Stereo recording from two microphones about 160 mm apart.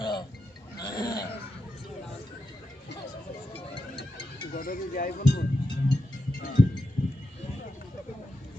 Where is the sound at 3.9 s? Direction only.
30° left (ahead or behind).